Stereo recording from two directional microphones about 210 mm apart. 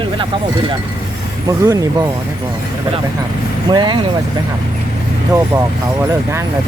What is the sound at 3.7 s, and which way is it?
Speech, 20° right (ahead or behind).